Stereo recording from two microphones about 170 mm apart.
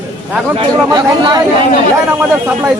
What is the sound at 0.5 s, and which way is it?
Speech, 25° right (ahead or behind).